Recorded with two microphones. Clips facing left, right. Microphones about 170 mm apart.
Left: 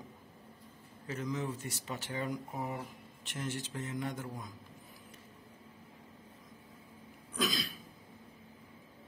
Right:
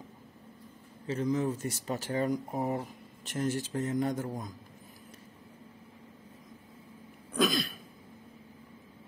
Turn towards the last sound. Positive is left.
turn(degrees=-55)  # may be behind; listen again after turning